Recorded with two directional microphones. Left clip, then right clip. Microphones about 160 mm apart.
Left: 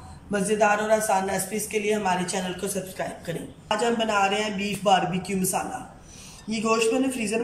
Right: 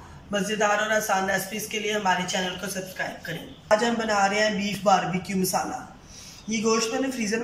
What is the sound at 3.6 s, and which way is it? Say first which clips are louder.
A man's voice: right 2 dB; 15° left (ahead or behind).